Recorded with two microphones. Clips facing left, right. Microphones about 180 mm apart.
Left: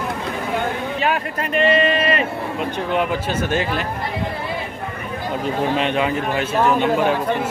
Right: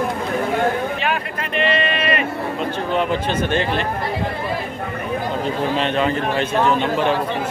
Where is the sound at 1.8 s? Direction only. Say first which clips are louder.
Left 3 dB; 35° left (ahead or behind).